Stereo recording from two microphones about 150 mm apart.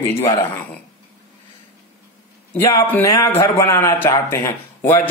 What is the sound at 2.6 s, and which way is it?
Speech, 20° left (ahead or behind).